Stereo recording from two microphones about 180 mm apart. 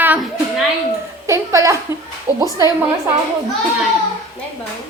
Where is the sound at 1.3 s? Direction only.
15° right (ahead or behind).